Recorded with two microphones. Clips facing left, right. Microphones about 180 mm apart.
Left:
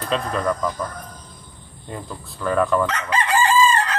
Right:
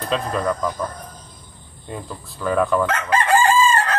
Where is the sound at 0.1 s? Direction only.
5° right (ahead or behind).